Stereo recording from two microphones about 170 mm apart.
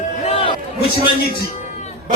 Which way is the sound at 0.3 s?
35° left (ahead or behind).